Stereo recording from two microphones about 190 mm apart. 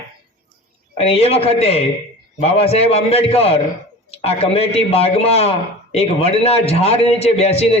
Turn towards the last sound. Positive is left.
turn(degrees=35)  # may be behind; listen again after turning